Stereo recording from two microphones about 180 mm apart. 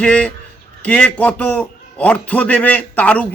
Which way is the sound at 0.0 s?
5° left (ahead or behind).